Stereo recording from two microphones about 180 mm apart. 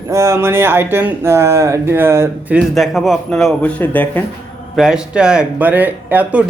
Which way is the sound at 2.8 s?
Centre (ahead or behind).